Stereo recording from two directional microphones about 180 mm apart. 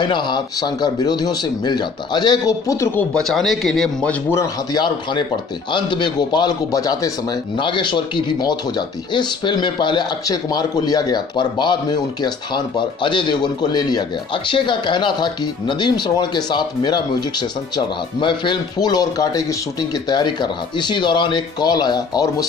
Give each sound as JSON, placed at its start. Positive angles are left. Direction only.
{"t": 0.0, "sound": "a man's voice", "side_deg": 25}
{"t": 3.1, "sound": "speech", "side_deg": 0}
{"t": 4.7, "sound": "a man's voice", "side_deg": 25}